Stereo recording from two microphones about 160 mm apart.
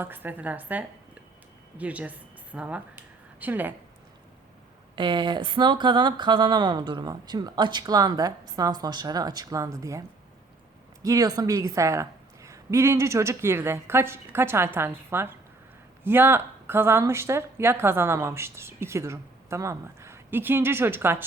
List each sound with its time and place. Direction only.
0.0 s a woman's voice: 10° right (ahead or behind)
4.9 s speech: 30° right (ahead or behind)
11.0 s a woman's voice: 20° right (ahead or behind)